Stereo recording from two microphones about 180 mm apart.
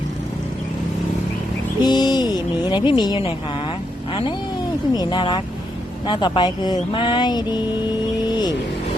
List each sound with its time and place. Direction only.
1.8 s a sound: 25° left (ahead or behind)
4.9 s speech: 25° left (ahead or behind)
8.3 s vehicle: 25° left (ahead or behind)